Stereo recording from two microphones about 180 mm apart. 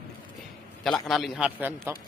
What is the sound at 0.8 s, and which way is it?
A man's voice, centre (ahead or behind).